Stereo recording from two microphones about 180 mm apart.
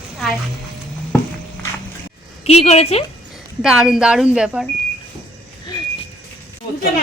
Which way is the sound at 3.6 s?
5° right (ahead or behind).